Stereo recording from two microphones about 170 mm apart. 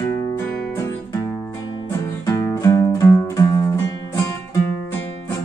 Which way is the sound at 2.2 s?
20° left (ahead or behind).